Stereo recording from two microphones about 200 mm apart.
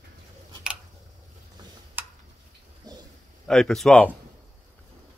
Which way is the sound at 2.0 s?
10° right (ahead or behind).